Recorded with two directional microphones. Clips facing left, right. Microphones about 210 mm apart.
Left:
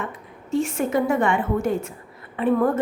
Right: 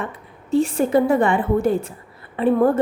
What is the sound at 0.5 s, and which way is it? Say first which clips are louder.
A woman's voice: right 5 dB; 35° right (ahead or behind).